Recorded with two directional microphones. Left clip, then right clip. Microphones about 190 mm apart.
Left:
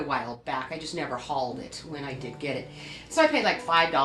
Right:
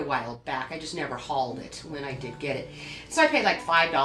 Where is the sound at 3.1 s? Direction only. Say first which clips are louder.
Right 1 dB; 20° left (ahead or behind).